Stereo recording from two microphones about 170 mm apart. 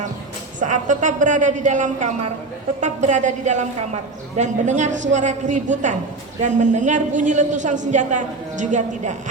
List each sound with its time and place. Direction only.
0.6 s a man's voice: 45° right (ahead or behind)